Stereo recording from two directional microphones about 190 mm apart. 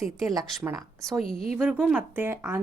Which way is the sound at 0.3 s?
15° right (ahead or behind).